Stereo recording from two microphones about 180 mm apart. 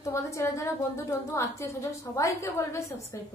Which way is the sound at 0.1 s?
15° left (ahead or behind).